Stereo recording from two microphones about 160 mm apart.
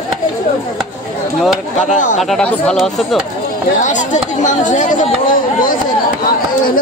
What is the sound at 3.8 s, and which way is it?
Speech, 50° left (ahead or behind).